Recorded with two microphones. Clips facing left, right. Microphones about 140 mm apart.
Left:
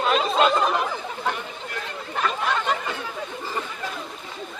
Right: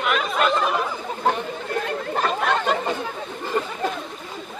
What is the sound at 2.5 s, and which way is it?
Speech, 40° right (ahead or behind).